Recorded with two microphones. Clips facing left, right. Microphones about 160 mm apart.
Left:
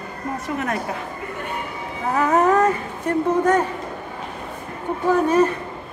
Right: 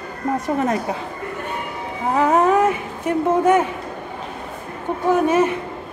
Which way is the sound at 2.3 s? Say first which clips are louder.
Even; 10° right (ahead or behind).